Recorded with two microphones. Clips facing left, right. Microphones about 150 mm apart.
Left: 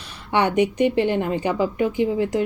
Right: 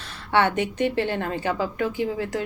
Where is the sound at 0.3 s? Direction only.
15° left (ahead or behind).